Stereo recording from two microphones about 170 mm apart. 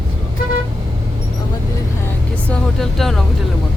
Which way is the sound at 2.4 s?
5° left (ahead or behind).